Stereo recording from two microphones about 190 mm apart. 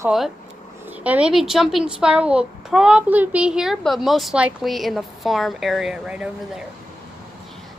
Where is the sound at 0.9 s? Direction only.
5° right (ahead or behind).